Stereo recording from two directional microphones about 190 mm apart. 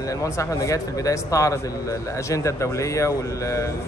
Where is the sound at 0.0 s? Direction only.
15° left (ahead or behind).